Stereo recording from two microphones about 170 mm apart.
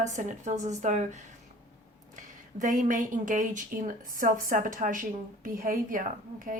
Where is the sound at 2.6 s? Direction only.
50° right (ahead or behind).